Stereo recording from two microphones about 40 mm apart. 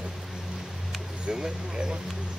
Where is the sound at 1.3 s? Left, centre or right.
Centre.